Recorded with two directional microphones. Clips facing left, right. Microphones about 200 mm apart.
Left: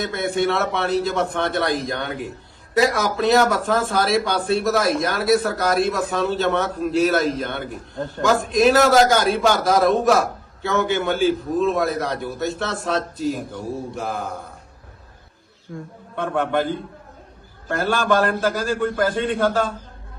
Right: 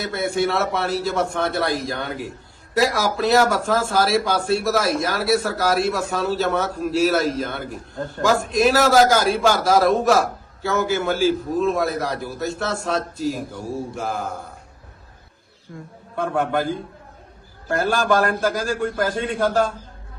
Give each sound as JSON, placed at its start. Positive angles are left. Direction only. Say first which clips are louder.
{"t": 0.0, "sound": "speech", "louder": "even", "side_deg": 0}
{"t": 15.7, "sound": "speech", "louder": "even", "side_deg": 0}
{"t": 17.7, "sound": "a man's voice", "louder": "right 1 dB", "side_deg": -45}
{"t": 18.3, "sound": "speech", "louder": "left 1 dB", "side_deg": 0}